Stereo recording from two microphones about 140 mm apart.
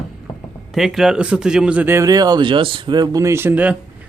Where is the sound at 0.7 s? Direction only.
Centre (ahead or behind).